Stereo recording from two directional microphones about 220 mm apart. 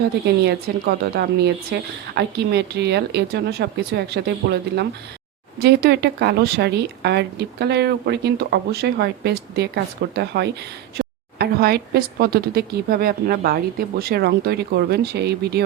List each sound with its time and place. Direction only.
0.4 s speech: 45° right (ahead or behind)